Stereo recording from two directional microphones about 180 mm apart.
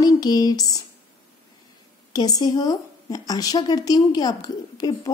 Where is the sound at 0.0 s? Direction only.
20° left (ahead or behind).